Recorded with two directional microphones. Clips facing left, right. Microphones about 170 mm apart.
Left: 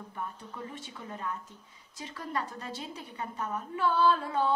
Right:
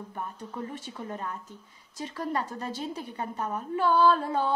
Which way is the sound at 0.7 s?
45° right (ahead or behind).